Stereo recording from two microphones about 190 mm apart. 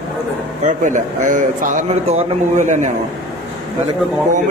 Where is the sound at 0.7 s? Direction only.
40° right (ahead or behind).